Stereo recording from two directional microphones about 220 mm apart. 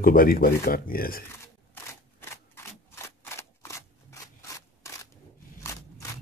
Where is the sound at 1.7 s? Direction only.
10° left (ahead or behind).